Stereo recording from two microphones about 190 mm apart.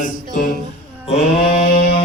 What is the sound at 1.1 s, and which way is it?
Mantra, 35° left (ahead or behind).